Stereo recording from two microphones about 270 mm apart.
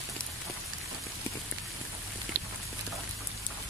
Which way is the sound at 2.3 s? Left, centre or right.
Right.